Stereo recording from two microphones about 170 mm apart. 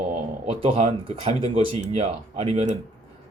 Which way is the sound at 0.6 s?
35° right (ahead or behind).